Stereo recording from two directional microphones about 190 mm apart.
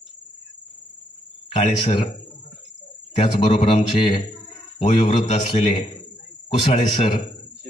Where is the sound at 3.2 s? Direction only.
30° left (ahead or behind).